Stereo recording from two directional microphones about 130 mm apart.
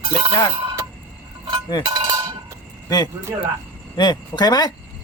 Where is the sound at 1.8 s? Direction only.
30° right (ahead or behind).